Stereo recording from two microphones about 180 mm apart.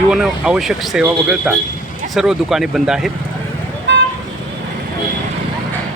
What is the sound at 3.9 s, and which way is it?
Vehicle, 75° right (ahead or behind).